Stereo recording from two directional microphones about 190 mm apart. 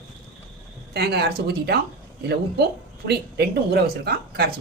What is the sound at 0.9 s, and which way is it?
Speech, 55° right (ahead or behind).